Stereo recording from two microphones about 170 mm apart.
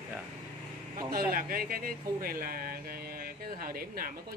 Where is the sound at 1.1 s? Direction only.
60° right (ahead or behind).